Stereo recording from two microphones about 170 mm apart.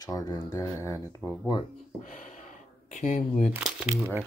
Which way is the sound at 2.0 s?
50° left (ahead or behind).